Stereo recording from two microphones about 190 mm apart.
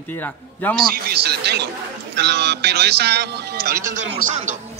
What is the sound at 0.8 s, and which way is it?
Speech, 55° right (ahead or behind).